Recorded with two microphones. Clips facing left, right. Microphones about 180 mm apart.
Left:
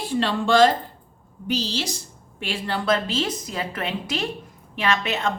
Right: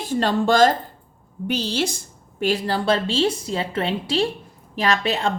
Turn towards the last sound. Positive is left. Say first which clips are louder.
# right 2 dB
turn(degrees=-30)  # may be behind; listen again after turning